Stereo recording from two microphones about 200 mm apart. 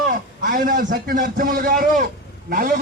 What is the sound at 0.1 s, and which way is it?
A man's voice, 45° right (ahead or behind).